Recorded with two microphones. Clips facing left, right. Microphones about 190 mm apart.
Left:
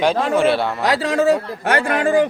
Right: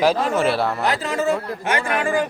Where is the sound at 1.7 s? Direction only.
60° left (ahead or behind).